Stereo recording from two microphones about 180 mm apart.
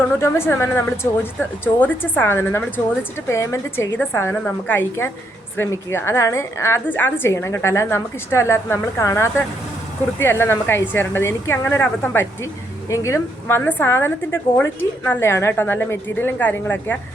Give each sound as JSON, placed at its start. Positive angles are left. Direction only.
{"t": 0.2, "sound": "a woman's voice", "side_deg": 15}